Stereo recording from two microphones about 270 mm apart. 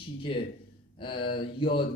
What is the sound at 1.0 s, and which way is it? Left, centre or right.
Speech, centre.